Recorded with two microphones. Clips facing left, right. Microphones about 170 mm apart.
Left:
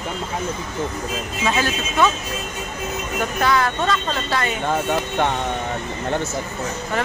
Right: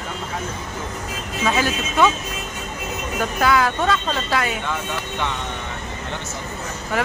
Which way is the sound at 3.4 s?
5° right (ahead or behind).